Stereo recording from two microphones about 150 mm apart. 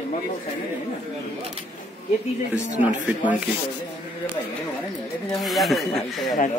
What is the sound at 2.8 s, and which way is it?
Speech, 10° right (ahead or behind).